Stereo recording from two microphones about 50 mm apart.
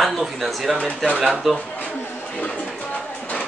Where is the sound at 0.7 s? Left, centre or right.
Left.